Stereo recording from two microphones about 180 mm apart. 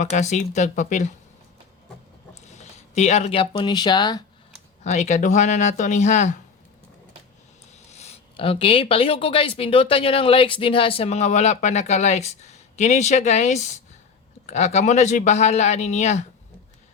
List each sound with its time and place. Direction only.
0.0 s speech: 40° left (ahead or behind)
2.5 s speech: 40° left (ahead or behind); by 4.2 s 25° left (ahead or behind)
4.8 s speech: 40° left (ahead or behind)
7.9 s speech: 35° left (ahead or behind)